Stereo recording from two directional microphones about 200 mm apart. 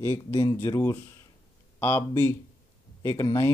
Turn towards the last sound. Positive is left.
turn(degrees=15)  # may be behind; listen again after turning